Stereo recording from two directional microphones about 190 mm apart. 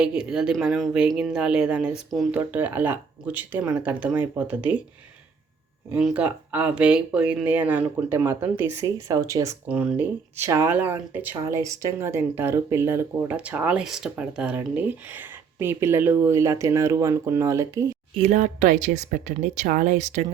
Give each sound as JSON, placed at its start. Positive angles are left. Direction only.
{"t": 0.0, "sound": "speech", "side_deg": -5}
{"t": 5.9, "sound": "speech", "side_deg": -5}
{"t": 18.2, "sound": "speech", "side_deg": -40}